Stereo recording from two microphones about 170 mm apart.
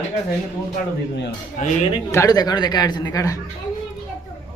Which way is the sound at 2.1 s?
20° left (ahead or behind).